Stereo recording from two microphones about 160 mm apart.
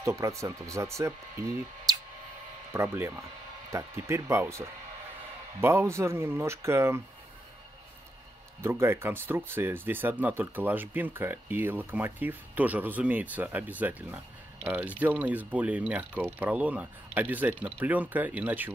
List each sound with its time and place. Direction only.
0.0 s speech: 20° right (ahead or behind)
8.6 s speech: 15° right (ahead or behind)